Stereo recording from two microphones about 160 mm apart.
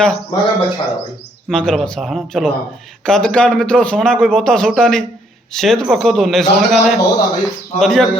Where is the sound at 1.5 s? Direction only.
5° left (ahead or behind).